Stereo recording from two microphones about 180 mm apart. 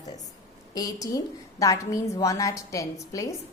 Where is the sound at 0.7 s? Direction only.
20° left (ahead or behind).